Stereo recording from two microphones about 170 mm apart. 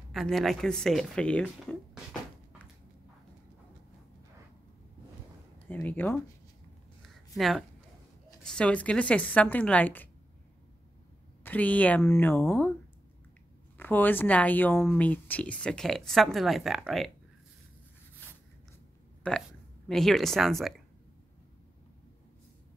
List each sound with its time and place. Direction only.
0.1 s speech: centre (ahead or behind)
5.7 s speech: 10° left (ahead or behind)
7.3 s speech: centre (ahead or behind)
11.4 s speech: 10° left (ahead or behind)
13.7 s speech: 10° left (ahead or behind)
19.2 s speech: 5° left (ahead or behind)